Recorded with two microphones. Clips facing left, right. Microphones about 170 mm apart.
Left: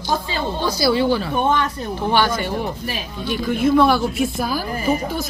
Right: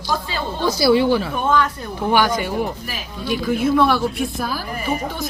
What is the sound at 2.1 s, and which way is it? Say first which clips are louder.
A woman's voice: right 1 dB; 10° right (ahead or behind).